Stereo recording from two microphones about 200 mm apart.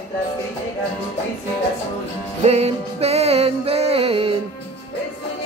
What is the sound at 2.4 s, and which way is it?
Music, 30° right (ahead or behind).